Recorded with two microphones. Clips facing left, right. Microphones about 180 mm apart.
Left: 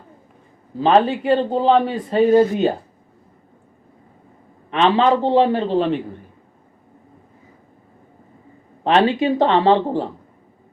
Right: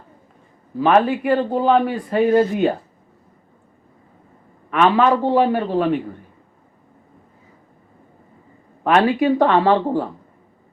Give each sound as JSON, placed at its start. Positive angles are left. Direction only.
{"t": 0.8, "sound": "a man's voice", "side_deg": 25}
{"t": 4.7, "sound": "a man's voice", "side_deg": 25}
{"t": 8.8, "sound": "a man's voice", "side_deg": 25}